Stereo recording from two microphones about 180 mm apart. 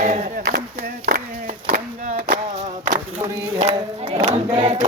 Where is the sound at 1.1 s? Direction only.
60° right (ahead or behind).